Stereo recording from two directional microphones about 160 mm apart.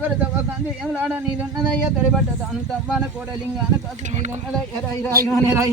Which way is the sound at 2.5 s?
5° right (ahead or behind).